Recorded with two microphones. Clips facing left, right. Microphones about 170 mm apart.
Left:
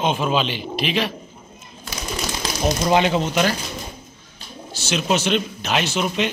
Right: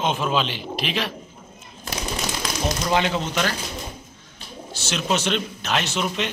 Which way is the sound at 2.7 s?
20° left (ahead or behind).